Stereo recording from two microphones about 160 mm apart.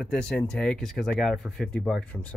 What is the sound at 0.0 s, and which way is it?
Speech, 5° left (ahead or behind).